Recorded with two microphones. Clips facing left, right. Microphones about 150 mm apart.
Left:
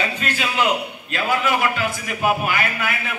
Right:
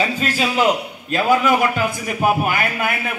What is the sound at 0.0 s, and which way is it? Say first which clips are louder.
A man's voice: right 4 dB; 35° right (ahead or behind).